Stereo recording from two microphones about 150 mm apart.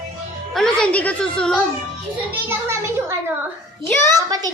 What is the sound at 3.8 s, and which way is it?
Speech, 20° left (ahead or behind).